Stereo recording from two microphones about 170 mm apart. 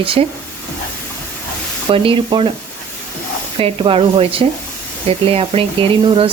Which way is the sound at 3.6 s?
30° right (ahead or behind).